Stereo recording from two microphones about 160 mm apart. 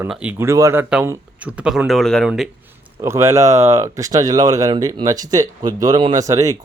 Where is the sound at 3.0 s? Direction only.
15° right (ahead or behind).